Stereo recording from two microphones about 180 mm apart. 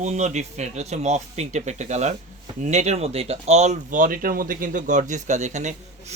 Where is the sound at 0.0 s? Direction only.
40° right (ahead or behind).